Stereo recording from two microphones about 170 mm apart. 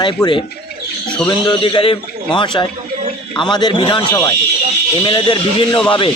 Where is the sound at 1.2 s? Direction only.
25° left (ahead or behind).